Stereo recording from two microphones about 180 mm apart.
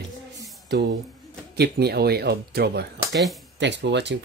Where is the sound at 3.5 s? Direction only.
75° right (ahead or behind).